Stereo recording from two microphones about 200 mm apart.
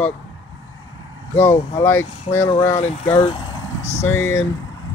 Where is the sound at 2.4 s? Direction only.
35° left (ahead or behind).